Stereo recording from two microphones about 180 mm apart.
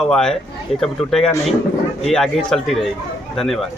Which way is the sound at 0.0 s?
5° left (ahead or behind).